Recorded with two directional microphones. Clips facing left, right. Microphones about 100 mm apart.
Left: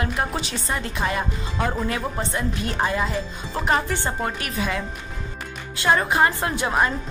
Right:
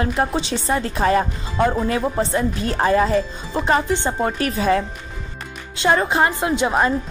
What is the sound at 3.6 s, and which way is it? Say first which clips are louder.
Speech: right 4 dB; 20° right (ahead or behind).